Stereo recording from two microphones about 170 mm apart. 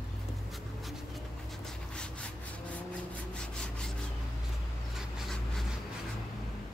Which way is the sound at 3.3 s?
5° left (ahead or behind).